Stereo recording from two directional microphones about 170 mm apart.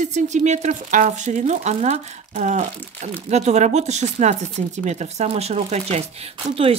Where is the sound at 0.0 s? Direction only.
45° right (ahead or behind).